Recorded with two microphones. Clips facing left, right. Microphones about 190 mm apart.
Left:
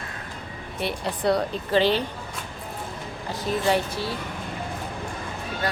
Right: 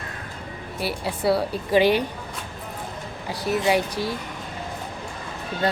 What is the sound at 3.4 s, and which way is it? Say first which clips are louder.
Speech: right 2 dB; 10° right (ahead or behind).